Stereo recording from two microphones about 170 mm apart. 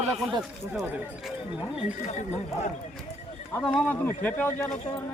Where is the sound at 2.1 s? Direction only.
40° left (ahead or behind).